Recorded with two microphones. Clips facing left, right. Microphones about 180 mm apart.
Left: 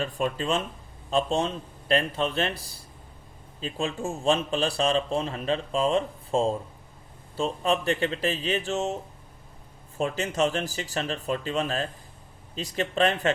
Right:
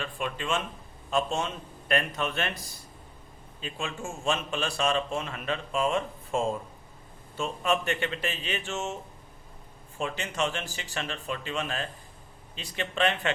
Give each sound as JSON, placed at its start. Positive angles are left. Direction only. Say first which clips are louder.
{"t": 0.0, "sound": "a man's voice", "louder": "left 6 dB", "side_deg": 40}
{"t": 10.0, "sound": "a man's voice", "louder": "left 5 dB", "side_deg": 35}